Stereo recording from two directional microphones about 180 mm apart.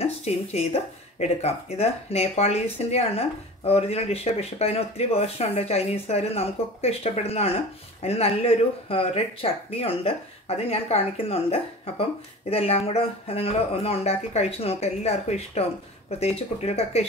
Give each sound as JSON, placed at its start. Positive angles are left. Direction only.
{"t": 0.0, "sound": "speech", "side_deg": 35}